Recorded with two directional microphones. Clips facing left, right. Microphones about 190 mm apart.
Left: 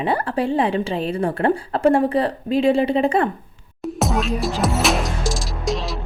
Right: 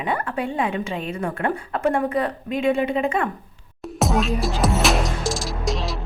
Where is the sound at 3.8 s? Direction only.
Centre (ahead or behind).